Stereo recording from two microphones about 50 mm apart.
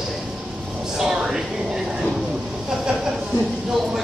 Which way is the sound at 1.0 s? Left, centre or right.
Centre.